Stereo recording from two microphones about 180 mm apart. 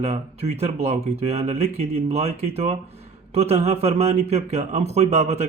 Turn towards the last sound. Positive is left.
turn(degrees=-40)  # may be behind; listen again after turning